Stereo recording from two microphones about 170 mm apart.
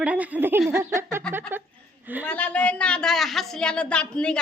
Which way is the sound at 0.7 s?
15° right (ahead or behind).